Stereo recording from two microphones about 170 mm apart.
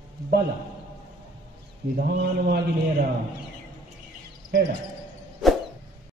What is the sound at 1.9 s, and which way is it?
Speech, 65° right (ahead or behind).